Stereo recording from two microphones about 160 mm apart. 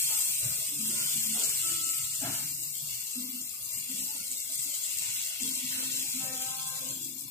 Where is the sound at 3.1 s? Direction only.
15° left (ahead or behind).